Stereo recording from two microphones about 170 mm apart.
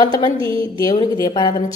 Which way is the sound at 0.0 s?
25° left (ahead or behind).